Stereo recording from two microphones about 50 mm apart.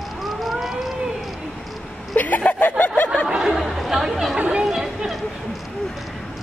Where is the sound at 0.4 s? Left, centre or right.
Centre.